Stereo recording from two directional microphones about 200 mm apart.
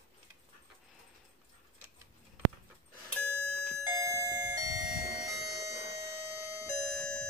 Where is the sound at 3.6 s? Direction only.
15° right (ahead or behind).